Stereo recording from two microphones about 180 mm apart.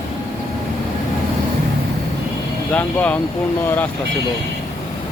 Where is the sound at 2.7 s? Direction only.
10° left (ahead or behind).